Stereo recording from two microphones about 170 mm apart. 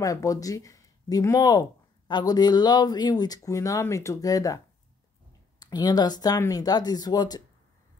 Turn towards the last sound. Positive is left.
turn(degrees=25)  # may be behind; listen again after turning